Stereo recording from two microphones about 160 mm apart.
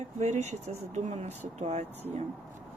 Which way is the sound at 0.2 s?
45° right (ahead or behind).